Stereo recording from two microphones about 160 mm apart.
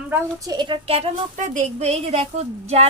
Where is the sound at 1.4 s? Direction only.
50° right (ahead or behind).